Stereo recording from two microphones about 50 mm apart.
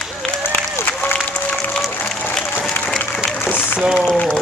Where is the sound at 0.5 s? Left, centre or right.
Left.